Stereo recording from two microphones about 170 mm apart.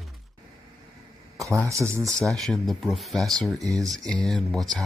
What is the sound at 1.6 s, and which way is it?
Speech, 15° right (ahead or behind).